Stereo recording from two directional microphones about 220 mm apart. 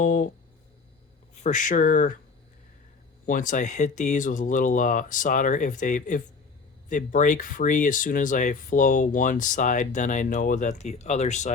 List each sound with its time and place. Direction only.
0.0 s a sound: 40° left (ahead or behind)
1.5 s speech: 35° left (ahead or behind)
3.2 s speech: 35° left (ahead or behind)